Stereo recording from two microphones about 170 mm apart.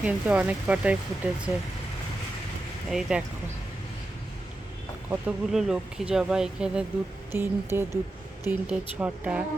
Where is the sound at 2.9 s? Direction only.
5° right (ahead or behind).